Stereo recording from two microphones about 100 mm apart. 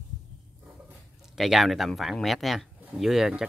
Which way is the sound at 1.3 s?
Centre (ahead or behind).